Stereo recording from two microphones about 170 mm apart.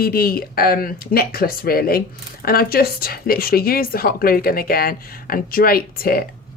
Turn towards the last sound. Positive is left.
turn(degrees=60)  # may be behind; listen again after turning